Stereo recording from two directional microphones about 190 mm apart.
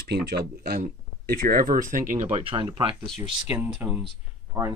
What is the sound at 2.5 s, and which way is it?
Speech, 25° right (ahead or behind).